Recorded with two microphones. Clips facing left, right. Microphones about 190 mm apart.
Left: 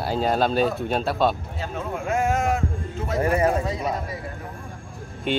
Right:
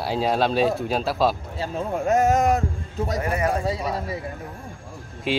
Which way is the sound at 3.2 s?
30° left (ahead or behind).